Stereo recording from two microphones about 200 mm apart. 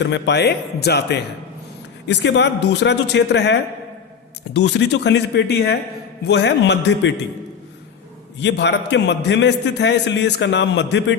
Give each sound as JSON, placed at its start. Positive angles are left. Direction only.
{"t": 0.0, "sound": "a man's voice", "side_deg": 60}
{"t": 8.4, "sound": "a man's voice", "side_deg": 60}